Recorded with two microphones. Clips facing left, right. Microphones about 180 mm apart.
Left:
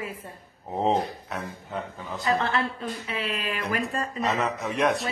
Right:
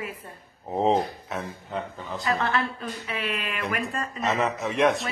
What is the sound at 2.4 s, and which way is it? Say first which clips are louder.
A woman's voice: even; 30° left (ahead or behind).